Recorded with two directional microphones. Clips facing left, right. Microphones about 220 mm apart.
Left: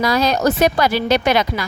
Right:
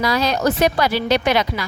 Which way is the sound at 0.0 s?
45° left (ahead or behind).